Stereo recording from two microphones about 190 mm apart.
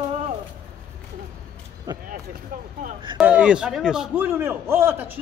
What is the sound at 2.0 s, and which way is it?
Speech, 50° right (ahead or behind).